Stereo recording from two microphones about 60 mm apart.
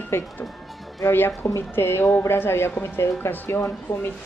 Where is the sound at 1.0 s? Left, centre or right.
Left.